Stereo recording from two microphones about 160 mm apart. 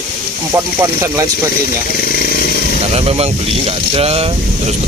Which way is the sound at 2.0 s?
70° left (ahead or behind).